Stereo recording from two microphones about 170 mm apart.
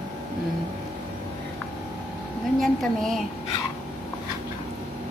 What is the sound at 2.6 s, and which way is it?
Speech, centre (ahead or behind).